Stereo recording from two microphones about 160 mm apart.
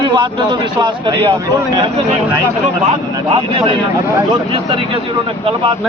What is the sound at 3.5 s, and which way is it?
Speech, 30° right (ahead or behind).